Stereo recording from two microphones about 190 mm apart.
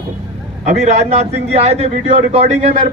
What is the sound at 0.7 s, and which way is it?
A man's voice, 35° right (ahead or behind).